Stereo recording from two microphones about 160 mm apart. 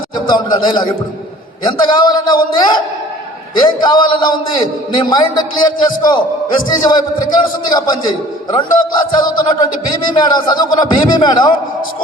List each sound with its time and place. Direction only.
0.3 s a man's voice: 25° left (ahead or behind)